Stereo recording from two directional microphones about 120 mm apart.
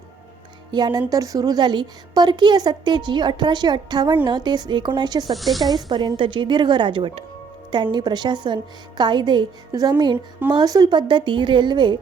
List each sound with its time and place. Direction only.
0.7 s a woman's voice: 35° right (ahead or behind)
5.3 s speech: centre (ahead or behind)
5.7 s a woman's voice: 40° right (ahead or behind)